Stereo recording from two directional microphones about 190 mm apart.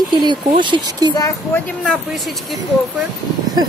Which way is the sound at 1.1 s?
15° left (ahead or behind).